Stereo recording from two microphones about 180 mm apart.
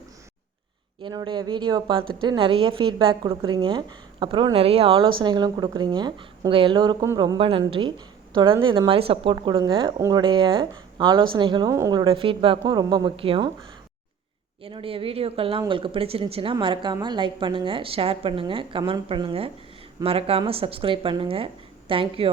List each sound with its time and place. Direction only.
1.0 s a woman's voice: 25° right (ahead or behind)
14.6 s a woman's voice: 30° right (ahead or behind)